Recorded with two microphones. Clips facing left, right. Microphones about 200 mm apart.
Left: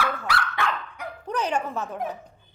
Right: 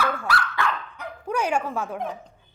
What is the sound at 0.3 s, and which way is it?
Dog, 20° left (ahead or behind).